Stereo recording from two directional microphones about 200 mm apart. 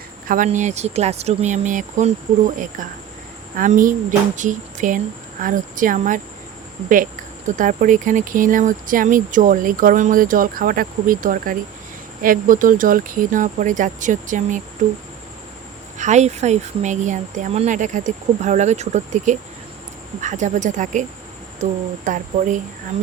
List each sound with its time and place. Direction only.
0.3 s speech: 40° right (ahead or behind)
3.5 s speech: 40° right (ahead or behind)
16.0 s speech: 35° right (ahead or behind)